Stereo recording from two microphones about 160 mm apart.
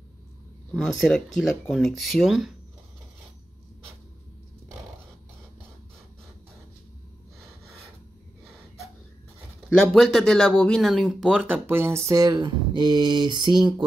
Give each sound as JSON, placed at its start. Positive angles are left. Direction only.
{"t": 0.7, "sound": "speech", "side_deg": 5}
{"t": 9.9, "sound": "speech", "side_deg": 5}